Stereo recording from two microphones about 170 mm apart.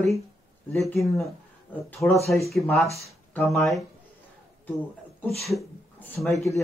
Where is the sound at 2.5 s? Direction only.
Centre (ahead or behind).